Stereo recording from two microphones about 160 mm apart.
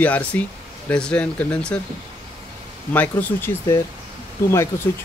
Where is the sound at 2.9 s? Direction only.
10° left (ahead or behind).